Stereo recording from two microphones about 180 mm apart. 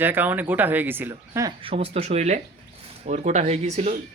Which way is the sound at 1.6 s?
35° right (ahead or behind).